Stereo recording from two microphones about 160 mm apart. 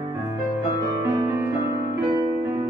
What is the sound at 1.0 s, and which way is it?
Music, 15° right (ahead or behind).